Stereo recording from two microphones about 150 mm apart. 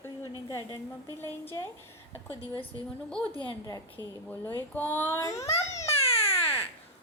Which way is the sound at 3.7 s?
15° left (ahead or behind).